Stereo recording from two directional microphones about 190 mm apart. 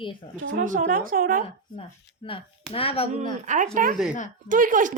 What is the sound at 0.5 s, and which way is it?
Speech, 45° right (ahead or behind).